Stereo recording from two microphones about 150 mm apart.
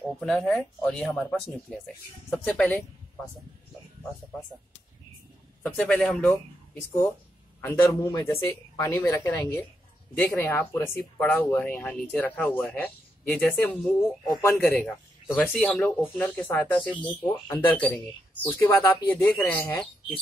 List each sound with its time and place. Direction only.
0.2 s speech: 5° left (ahead or behind)
2.4 s speech: 10° left (ahead or behind)
5.6 s speech: 10° left (ahead or behind)
7.6 s speech: 20° left (ahead or behind)